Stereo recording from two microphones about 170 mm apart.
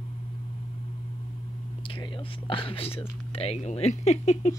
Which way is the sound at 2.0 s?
30° left (ahead or behind).